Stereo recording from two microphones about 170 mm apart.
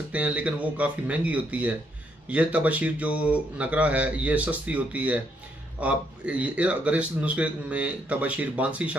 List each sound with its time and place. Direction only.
0.1 s a man's voice: 10° right (ahead or behind)